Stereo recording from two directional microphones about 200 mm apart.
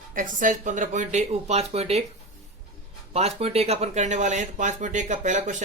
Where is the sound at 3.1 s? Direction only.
30° right (ahead or behind).